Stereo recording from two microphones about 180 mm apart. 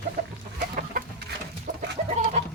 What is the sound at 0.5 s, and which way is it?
Chicken, 55° right (ahead or behind).